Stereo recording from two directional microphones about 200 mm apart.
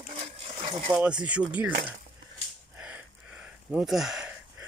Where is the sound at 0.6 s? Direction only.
30° right (ahead or behind).